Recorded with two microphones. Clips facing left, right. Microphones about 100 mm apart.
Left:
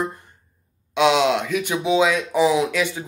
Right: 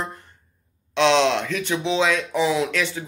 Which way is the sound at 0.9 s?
10° left (ahead or behind).